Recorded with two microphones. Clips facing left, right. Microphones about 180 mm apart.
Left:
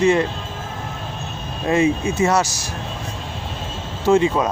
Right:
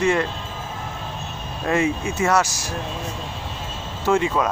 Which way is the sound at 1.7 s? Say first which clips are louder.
Left 4 dB; 25° left (ahead or behind).